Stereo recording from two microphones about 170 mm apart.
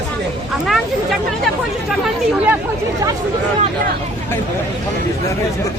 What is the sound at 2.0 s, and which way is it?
Chatter, 10° right (ahead or behind).